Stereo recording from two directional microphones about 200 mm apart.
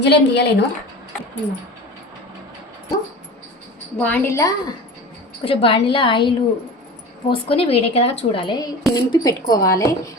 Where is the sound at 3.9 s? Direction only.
10° left (ahead or behind).